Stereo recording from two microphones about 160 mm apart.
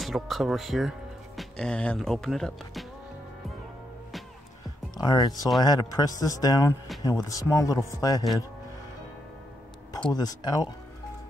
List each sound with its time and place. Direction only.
0.0 s speech: centre (ahead or behind)
4.9 s speech: 25° left (ahead or behind)
10.1 s speech: 25° left (ahead or behind)